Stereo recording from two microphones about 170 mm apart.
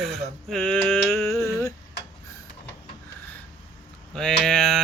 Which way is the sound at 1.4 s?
20° left (ahead or behind).